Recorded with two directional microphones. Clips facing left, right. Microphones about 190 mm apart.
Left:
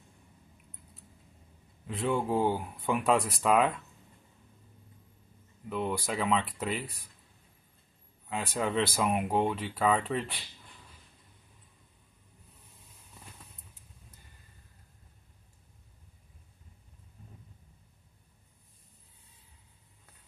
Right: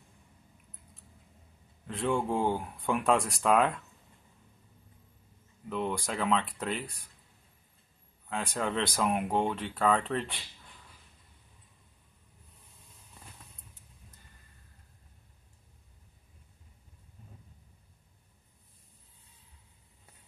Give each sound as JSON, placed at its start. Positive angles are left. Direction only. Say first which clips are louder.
{"t": 1.9, "sound": "speech", "louder": "even", "side_deg": 0}
{"t": 5.7, "sound": "speech", "louder": "left 1 dB", "side_deg": 5}
{"t": 8.3, "sound": "speech", "louder": "left 1 dB", "side_deg": 0}